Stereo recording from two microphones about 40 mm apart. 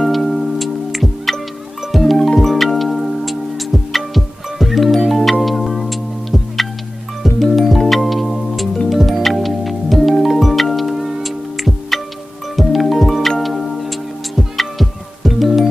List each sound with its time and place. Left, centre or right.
0.0 s music: centre